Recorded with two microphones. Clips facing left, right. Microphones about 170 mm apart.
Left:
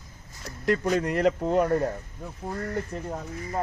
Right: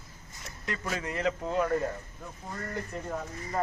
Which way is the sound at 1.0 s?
60° left (ahead or behind).